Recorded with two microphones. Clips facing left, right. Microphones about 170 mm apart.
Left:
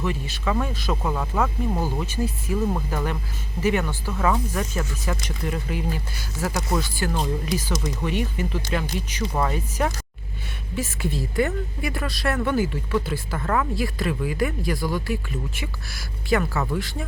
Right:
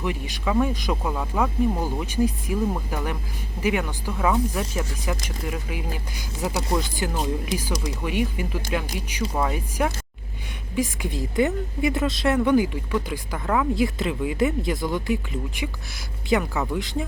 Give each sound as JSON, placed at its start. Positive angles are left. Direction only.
{"t": 0.0, "sound": "speech", "side_deg": -15}
{"t": 1.1, "sound": "speech", "side_deg": -5}